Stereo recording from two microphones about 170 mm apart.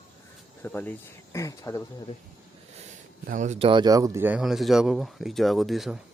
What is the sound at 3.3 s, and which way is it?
Speech, 45° right (ahead or behind).